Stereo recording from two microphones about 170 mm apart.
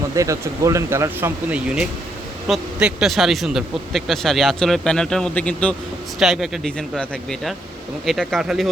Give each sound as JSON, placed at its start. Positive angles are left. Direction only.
{"t": 0.2, "sound": "speech", "side_deg": -20}